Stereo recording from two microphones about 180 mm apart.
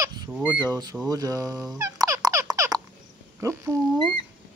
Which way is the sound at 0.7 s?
20° right (ahead or behind).